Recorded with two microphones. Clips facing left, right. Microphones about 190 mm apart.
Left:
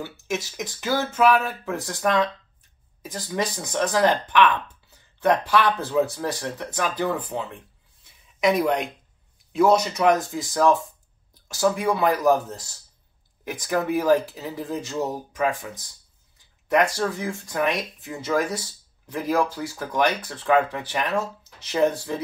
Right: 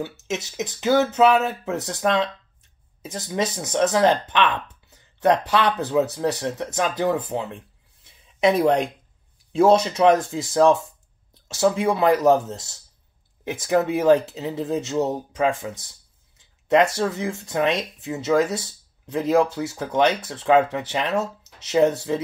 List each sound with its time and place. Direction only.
0.0 s speech: 20° right (ahead or behind)
8.0 s a sound: 25° right (ahead or behind)
9.5 s speech: 25° right (ahead or behind)